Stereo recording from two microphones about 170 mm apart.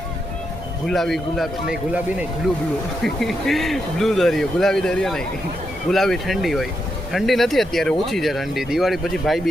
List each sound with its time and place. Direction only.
0.9 s speech: centre (ahead or behind)